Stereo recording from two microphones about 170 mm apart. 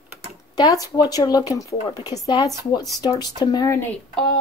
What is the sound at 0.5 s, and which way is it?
Speech, 20° left (ahead or behind).